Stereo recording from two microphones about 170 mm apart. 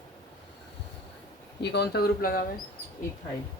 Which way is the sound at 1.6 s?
75° left (ahead or behind).